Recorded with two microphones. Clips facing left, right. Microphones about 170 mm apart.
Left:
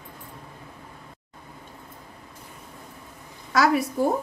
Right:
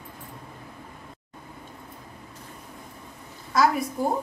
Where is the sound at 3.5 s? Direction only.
80° left.